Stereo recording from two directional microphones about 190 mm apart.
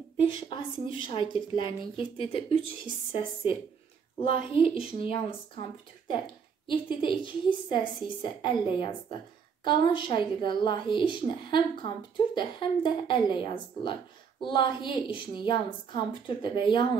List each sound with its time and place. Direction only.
0.5 s a woman's voice: 25° left (ahead or behind)
4.2 s a woman's voice: 30° left (ahead or behind)